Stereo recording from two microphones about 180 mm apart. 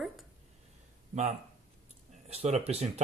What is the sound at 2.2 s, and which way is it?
Speech, 35° right (ahead or behind).